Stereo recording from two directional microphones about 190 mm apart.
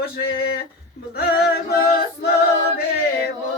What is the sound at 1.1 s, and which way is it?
Music, 55° left (ahead or behind).